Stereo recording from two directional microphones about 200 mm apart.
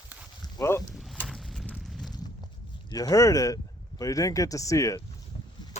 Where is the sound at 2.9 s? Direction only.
20° left (ahead or behind).